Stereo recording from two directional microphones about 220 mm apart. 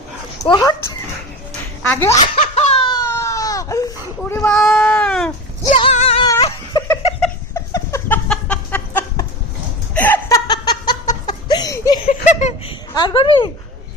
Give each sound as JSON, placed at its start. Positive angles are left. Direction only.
{"t": 0.4, "sound": "speech", "side_deg": 20}
{"t": 1.8, "sound": "speech", "side_deg": 10}
{"t": 2.1, "sound": "speech", "side_deg": 25}
{"t": 2.4, "sound": "laughter", "side_deg": 30}
{"t": 3.1, "sound": "baby cry", "side_deg": 15}
{"t": 5.7, "sound": "music", "side_deg": 30}
{"t": 6.2, "sound": "a sound", "side_deg": 15}
{"t": 9.9, "sound": "laughter", "side_deg": 10}
{"t": 11.4, "sound": "a sound", "side_deg": 20}
{"t": 12.0, "sound": "a sound", "side_deg": 30}
{"t": 12.9, "sound": "speech", "side_deg": 20}